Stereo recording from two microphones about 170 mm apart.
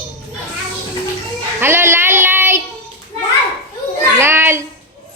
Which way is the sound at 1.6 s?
15° right (ahead or behind).